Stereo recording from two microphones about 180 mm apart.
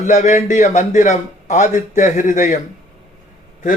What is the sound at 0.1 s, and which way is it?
A man's voice, 40° left (ahead or behind).